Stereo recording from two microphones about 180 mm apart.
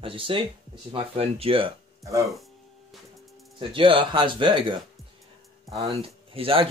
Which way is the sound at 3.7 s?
30° right (ahead or behind).